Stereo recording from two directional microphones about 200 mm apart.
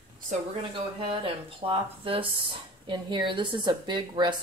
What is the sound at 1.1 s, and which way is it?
Speech, 25° right (ahead or behind).